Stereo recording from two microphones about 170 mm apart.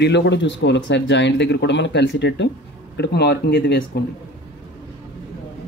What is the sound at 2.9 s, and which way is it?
Speech, 75° left (ahead or behind).